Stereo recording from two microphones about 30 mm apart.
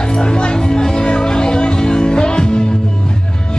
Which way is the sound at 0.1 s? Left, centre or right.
Left.